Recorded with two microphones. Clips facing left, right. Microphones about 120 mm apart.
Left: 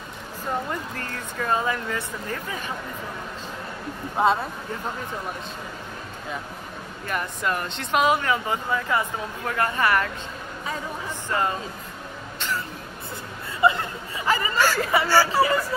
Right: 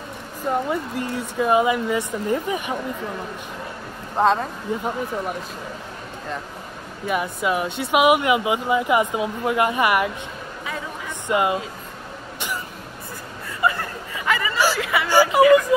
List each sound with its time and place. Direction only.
0.7 s speech: 10° right (ahead or behind)
4.2 s speech: 5° left (ahead or behind)
4.7 s speech: 15° right (ahead or behind)
7.1 s speech: 5° right (ahead or behind)
11.2 s speech: 15° right (ahead or behind)
12.4 s cough: 15° right (ahead or behind)
13.6 s a sound: 25° left (ahead or behind)
14.8 s speech: 40° left (ahead or behind)
15.4 s speech: 15° right (ahead or behind)